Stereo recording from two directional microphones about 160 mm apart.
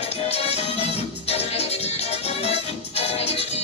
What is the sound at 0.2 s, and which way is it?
Music, 40° left (ahead or behind).